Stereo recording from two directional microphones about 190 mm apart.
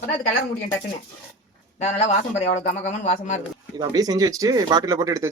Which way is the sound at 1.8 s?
35° left (ahead or behind).